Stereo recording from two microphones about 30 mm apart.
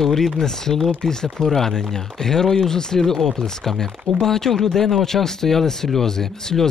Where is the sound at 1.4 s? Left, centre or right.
Centre.